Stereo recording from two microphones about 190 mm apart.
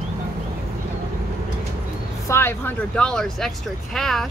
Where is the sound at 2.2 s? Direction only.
15° left (ahead or behind).